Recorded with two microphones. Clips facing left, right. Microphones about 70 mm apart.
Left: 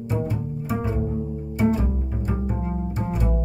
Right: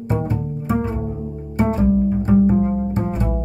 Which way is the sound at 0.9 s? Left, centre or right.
Centre.